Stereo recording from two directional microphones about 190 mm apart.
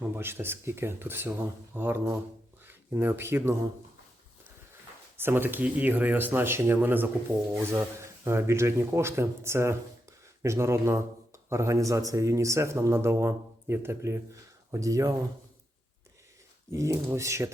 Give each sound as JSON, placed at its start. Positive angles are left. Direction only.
{"t": 0.0, "sound": "speech", "side_deg": -10}
{"t": 5.1, "sound": "speech", "side_deg": -10}
{"t": 16.7, "sound": "speech", "side_deg": -15}